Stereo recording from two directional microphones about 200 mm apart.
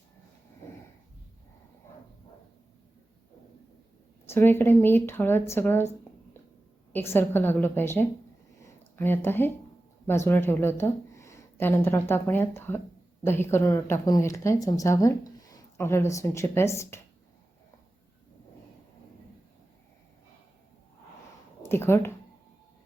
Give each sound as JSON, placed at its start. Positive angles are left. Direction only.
{"t": 4.3, "sound": "speech", "side_deg": 10}
{"t": 6.9, "sound": "speech", "side_deg": 10}
{"t": 21.7, "sound": "speech", "side_deg": 10}